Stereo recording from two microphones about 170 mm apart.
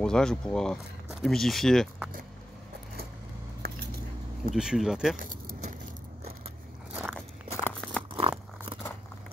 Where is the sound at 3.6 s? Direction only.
60° right (ahead or behind).